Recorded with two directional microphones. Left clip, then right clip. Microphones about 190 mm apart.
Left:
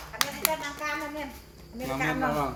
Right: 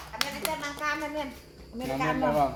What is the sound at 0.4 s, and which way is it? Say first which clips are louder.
Hands: left 4 dB; 50° left (ahead or behind).